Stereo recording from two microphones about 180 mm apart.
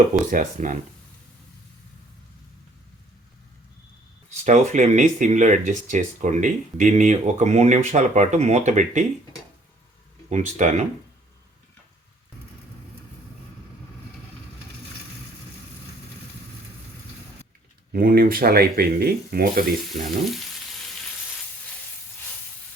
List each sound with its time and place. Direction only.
0.3 s speech: 45° right (ahead or behind)
4.4 s speech: 40° right (ahead or behind)
10.2 s speech: 40° right (ahead or behind)
17.9 s speech: 55° right (ahead or behind)
19.9 s speech: 40° right (ahead or behind)